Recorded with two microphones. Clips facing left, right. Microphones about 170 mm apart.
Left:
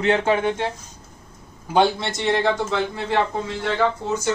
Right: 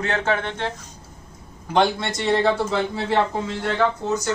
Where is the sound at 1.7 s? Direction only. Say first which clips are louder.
Left 1 dB; centre (ahead or behind).